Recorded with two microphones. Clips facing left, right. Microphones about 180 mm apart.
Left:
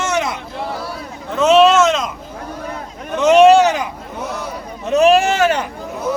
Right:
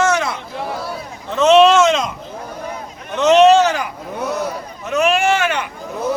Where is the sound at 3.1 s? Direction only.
10° left (ahead or behind).